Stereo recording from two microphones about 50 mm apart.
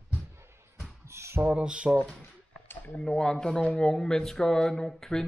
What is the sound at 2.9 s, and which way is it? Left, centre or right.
Speech, centre.